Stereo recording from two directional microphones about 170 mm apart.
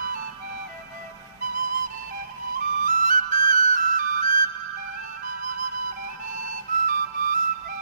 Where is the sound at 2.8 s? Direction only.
50° right (ahead or behind).